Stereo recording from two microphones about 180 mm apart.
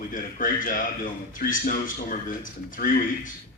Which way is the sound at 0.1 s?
50° left (ahead or behind).